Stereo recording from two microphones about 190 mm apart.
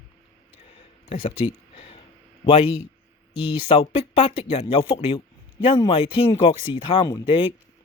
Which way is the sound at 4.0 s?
30° left (ahead or behind).